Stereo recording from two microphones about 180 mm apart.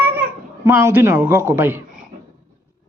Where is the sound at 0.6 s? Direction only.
15° right (ahead or behind).